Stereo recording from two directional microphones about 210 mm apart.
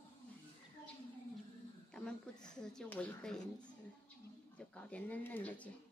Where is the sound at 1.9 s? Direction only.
5° left (ahead or behind).